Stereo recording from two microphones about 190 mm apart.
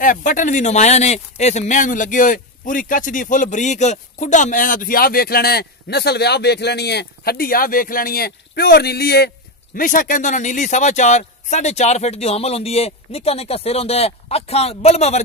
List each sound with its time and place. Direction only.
0.0 s speech: 45° left (ahead or behind)
9.8 s speech: 45° left (ahead or behind)